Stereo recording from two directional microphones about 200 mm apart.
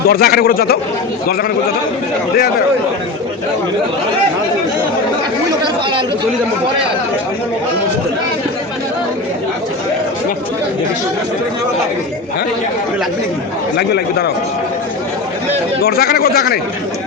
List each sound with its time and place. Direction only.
0.1 s speech: 50° left (ahead or behind)
13.7 s speech: 55° left (ahead or behind)
15.8 s speech: 50° left (ahead or behind)